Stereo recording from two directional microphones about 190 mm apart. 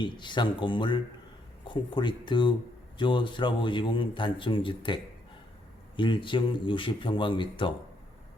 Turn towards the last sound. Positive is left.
turn(degrees=25)  # may be behind; listen again after turning